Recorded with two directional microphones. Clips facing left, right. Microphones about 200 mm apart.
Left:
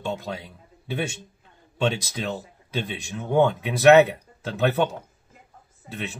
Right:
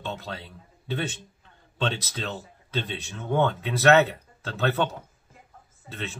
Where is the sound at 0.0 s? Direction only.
15° left (ahead or behind).